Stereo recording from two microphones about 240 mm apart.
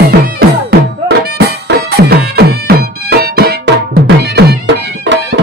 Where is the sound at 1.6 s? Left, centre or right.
Right.